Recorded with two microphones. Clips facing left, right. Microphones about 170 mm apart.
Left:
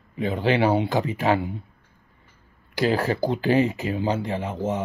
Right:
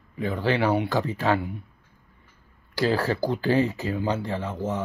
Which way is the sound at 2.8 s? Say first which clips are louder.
Left 1 dB; 20° left (ahead or behind).